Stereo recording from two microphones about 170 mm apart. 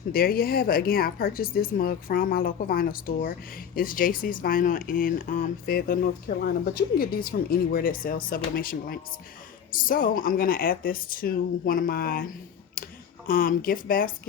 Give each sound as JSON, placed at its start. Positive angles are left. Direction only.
{"t": 0.1, "sound": "speech", "side_deg": 60}
{"t": 12.8, "sound": "a sound", "side_deg": 55}
{"t": 13.2, "sound": "speech", "side_deg": 55}